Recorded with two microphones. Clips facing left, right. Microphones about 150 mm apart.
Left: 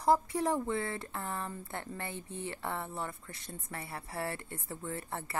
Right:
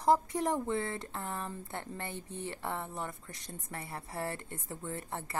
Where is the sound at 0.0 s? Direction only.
20° right (ahead or behind).